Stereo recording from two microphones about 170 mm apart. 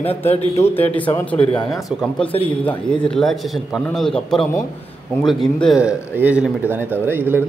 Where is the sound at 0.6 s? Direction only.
15° left (ahead or behind).